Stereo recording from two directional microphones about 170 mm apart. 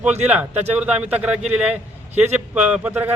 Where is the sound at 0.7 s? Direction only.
5° right (ahead or behind).